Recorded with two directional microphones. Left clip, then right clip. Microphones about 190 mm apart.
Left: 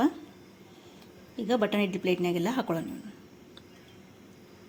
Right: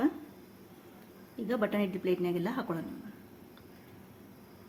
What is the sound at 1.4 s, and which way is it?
A woman's voice, 25° left (ahead or behind).